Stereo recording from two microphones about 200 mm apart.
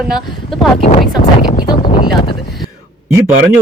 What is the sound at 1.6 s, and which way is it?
Speech, 20° left (ahead or behind).